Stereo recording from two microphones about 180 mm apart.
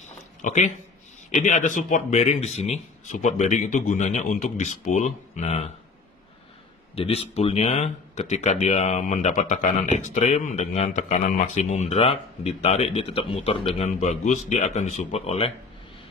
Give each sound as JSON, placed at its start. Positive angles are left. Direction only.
{"t": 0.4, "sound": "speech", "side_deg": 45}
{"t": 7.0, "sound": "speech", "side_deg": 35}